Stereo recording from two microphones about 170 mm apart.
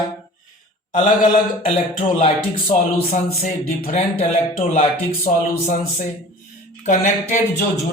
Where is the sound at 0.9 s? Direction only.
50° left (ahead or behind).